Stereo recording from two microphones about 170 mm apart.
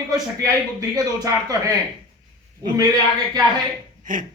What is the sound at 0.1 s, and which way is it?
A man's voice, 20° right (ahead or behind).